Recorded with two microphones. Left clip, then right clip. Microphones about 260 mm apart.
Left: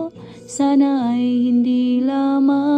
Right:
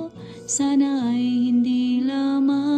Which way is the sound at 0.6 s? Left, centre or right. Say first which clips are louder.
Left 5 dB; centre.